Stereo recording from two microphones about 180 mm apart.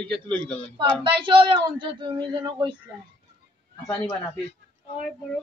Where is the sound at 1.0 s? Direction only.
30° right (ahead or behind).